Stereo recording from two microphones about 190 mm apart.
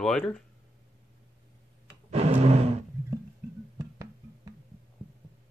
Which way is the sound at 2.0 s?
35° right (ahead or behind).